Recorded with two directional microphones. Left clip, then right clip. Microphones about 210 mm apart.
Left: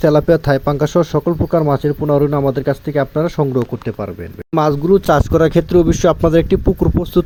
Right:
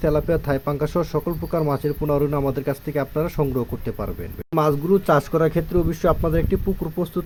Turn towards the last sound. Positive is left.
turn(degrees=30)  # may be behind; listen again after turning